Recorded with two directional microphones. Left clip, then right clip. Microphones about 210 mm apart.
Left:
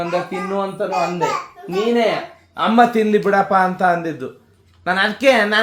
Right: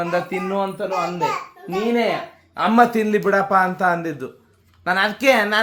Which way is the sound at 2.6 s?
25° right (ahead or behind).